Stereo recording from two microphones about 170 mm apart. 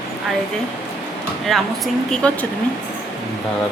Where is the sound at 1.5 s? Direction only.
Centre (ahead or behind).